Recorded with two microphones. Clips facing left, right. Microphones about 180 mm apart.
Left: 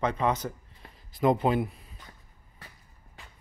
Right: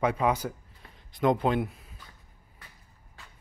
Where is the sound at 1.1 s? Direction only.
Centre (ahead or behind).